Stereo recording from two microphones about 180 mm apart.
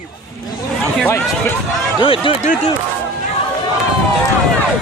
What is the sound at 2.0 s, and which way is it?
Speech, 30° left (ahead or behind).